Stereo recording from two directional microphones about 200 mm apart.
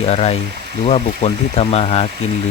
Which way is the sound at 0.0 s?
30° left (ahead or behind).